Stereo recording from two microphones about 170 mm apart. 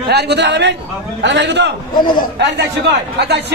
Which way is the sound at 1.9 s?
25° left (ahead or behind).